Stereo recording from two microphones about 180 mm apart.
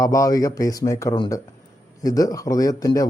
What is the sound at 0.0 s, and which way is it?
Speech, 20° left (ahead or behind).